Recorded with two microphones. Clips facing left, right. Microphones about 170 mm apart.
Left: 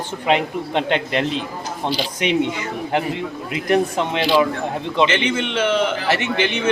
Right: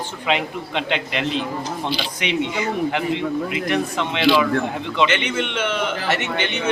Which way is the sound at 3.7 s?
40° left (ahead or behind).